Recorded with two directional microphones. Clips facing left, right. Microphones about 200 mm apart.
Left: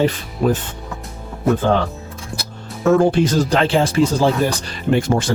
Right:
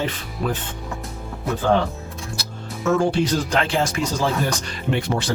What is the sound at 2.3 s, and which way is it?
Music, 55° left (ahead or behind).